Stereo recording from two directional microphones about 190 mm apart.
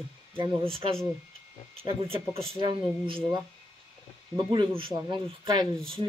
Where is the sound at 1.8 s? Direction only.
30° right (ahead or behind).